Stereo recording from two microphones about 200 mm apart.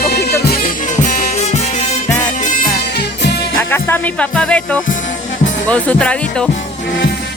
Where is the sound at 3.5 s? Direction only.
10° left (ahead or behind).